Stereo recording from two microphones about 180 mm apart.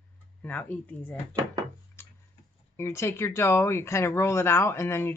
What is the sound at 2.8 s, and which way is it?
Speech, 15° left (ahead or behind).